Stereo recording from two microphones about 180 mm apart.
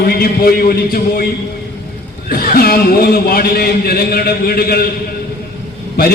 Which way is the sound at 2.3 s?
55° left (ahead or behind).